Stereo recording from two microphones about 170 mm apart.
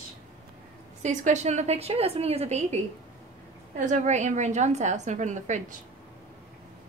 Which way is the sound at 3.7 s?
45° right (ahead or behind).